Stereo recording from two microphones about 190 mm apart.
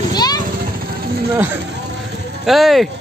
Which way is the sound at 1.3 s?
10° right (ahead or behind).